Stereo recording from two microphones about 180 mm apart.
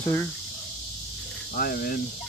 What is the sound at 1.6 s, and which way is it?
Cricket, 55° left (ahead or behind).